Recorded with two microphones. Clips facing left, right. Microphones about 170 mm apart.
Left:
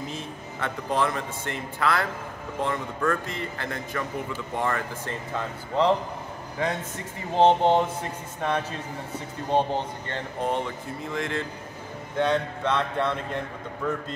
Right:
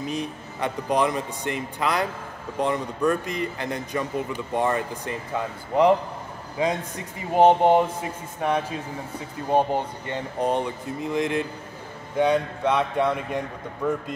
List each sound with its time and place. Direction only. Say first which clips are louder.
0.0 s a man's voice: right 5 dB; 15° right (ahead or behind)
7.3 s a man's voice: right 3 dB; 10° right (ahead or behind)